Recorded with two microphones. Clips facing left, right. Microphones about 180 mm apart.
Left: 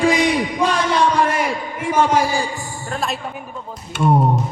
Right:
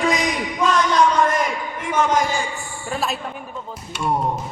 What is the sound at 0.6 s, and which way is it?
A man's voice, 30° left (ahead or behind).